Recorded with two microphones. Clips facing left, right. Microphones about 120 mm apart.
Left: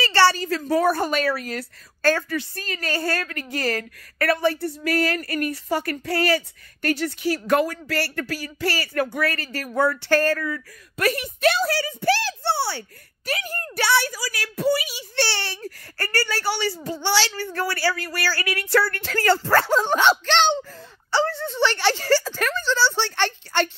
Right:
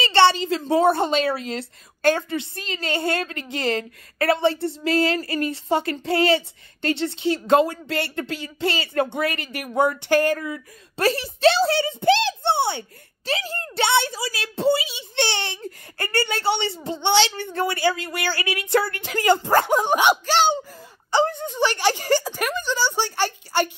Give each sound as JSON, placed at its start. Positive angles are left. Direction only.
{"t": 0.0, "sound": "a woman's voice", "side_deg": -20}